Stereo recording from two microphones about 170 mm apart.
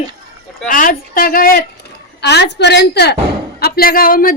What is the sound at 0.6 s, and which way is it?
A man's voice, 50° left (ahead or behind).